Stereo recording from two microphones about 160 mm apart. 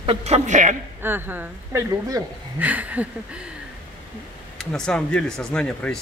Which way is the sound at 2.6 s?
10° right (ahead or behind).